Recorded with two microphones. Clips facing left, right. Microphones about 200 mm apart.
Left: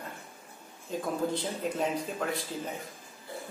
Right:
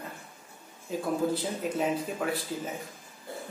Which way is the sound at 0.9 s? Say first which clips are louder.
Right 2 dB; 5° right (ahead or behind).